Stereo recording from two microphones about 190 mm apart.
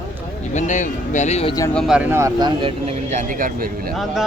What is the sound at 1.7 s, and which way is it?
Speech, 5° right (ahead or behind).